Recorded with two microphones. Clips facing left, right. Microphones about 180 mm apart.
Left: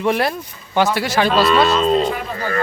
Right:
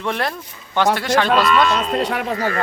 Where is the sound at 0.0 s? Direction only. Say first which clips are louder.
Left 5 dB; 10° left (ahead or behind).